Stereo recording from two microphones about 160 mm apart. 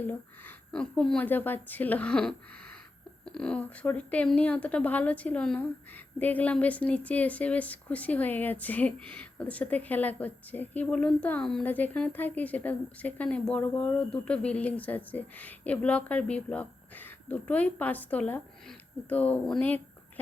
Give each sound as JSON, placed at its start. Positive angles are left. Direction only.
{"t": 0.1, "sound": "speech", "side_deg": 10}